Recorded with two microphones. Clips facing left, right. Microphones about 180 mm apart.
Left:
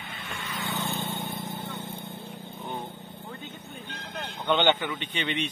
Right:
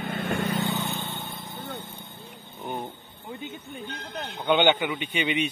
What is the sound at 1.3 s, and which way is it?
Vehicle, 20° left (ahead or behind).